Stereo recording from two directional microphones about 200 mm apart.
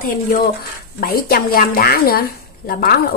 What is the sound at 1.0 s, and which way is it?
A woman's voice, 50° left (ahead or behind).